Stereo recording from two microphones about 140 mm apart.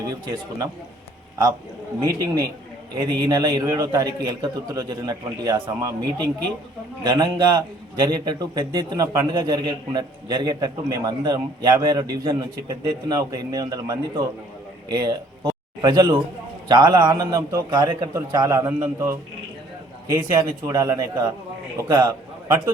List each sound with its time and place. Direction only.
0.1 s a man's voice: 25° right (ahead or behind)
2.0 s a man's voice: 20° right (ahead or behind)